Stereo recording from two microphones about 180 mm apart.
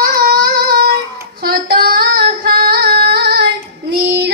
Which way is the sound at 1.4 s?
60° right (ahead or behind).